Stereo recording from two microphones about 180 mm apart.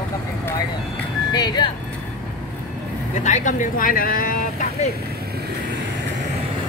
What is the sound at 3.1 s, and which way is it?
Speech, 40° left (ahead or behind).